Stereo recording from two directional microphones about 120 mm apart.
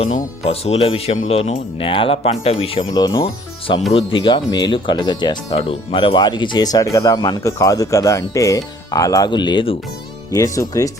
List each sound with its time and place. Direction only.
0.4 s speech: 55° left (ahead or behind)
2.9 s speech: 35° left (ahead or behind)
3.9 s speech: 45° left (ahead or behind)
5.5 s speech: 50° left (ahead or behind)
10.3 s speech: 25° left (ahead or behind)